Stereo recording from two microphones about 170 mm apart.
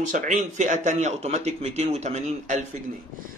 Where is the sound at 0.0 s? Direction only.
50° right (ahead or behind).